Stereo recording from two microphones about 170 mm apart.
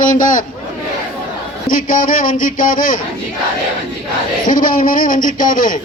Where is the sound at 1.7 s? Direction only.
55° left (ahead or behind).